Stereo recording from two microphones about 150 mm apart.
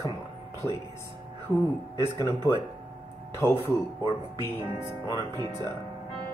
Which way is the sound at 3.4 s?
15° left (ahead or behind).